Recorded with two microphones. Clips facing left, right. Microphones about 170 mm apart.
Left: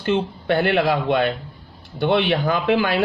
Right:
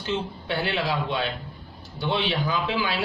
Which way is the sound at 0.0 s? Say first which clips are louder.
Left 8 dB; 60° left (ahead or behind).